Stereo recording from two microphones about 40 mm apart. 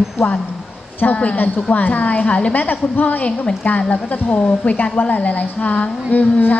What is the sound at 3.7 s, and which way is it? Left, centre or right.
Speech, left.